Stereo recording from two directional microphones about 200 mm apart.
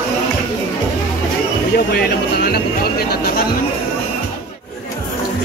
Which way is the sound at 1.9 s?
50° left (ahead or behind).